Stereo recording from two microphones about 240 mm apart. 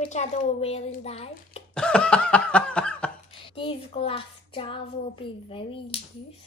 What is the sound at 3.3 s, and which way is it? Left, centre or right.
Speech, left.